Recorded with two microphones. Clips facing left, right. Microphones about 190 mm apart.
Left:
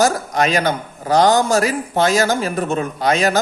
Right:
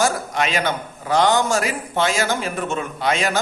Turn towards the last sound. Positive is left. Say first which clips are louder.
# left 4 dB
turn(degrees=40)  # may be behind; listen again after turning